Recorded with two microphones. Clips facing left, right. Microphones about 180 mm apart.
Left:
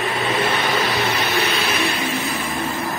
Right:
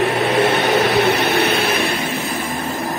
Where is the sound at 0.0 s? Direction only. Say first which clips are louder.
Right 6 dB; 75° right (ahead or behind); by 1.8 s 55° right (ahead or behind).